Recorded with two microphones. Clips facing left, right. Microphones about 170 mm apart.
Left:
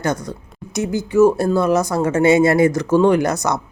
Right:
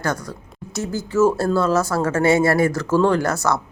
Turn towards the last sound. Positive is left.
turn(degrees=20)  # may be behind; listen again after turning